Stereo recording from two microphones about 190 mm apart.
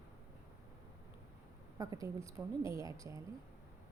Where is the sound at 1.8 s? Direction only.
15° right (ahead or behind).